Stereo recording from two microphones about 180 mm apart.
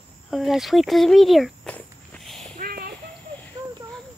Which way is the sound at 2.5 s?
55° right (ahead or behind).